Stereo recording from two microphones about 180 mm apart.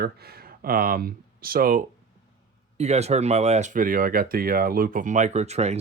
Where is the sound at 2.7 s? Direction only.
35° right (ahead or behind).